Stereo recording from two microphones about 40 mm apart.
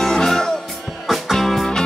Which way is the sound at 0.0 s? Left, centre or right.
Centre.